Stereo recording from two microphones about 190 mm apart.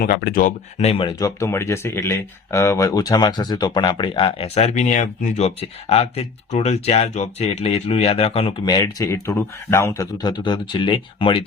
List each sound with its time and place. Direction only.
0.0 s speech: 50° left (ahead or behind)
0.8 s speech: 30° left (ahead or behind)
1.2 s speech: 15° left (ahead or behind)